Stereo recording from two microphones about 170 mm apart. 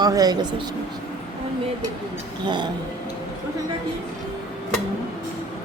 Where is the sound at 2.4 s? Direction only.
25° right (ahead or behind).